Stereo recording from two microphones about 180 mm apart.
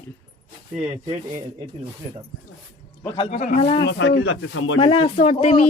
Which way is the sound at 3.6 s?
30° left (ahead or behind).